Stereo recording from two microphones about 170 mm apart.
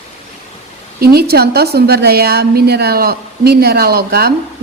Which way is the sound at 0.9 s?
65° right (ahead or behind).